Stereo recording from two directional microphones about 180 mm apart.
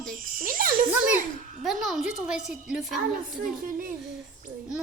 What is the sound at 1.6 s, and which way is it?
A woman's voice, centre (ahead or behind).